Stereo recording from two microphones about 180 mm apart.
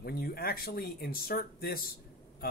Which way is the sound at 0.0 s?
55° left (ahead or behind).